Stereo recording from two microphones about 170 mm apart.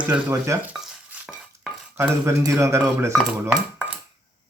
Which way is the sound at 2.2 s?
15° right (ahead or behind).